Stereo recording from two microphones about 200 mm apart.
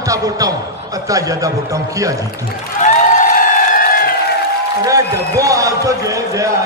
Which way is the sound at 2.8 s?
40° left (ahead or behind).